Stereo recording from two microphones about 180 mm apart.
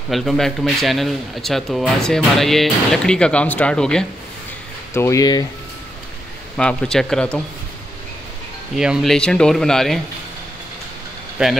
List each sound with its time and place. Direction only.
0.1 s speech: centre (ahead or behind)
4.9 s speech: 15° left (ahead or behind)
6.5 s speech: 5° left (ahead or behind)
8.7 s speech: 5° right (ahead or behind)
11.4 s speech: 5° right (ahead or behind)